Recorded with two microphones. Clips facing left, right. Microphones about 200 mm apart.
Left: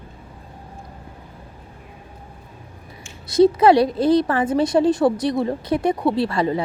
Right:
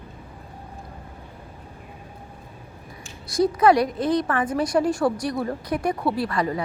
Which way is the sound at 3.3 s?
25° left (ahead or behind).